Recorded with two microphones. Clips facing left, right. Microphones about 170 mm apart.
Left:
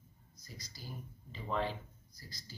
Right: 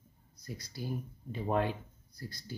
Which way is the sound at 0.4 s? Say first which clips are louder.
Right 11 dB; 60° right (ahead or behind).